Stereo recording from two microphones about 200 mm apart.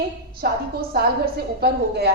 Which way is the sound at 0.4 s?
50° right (ahead or behind).